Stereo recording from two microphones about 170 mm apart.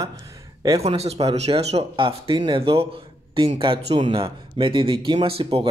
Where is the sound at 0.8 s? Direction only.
35° right (ahead or behind).